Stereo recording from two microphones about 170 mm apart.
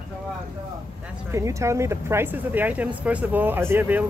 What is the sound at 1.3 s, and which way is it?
Speech, 15° right (ahead or behind).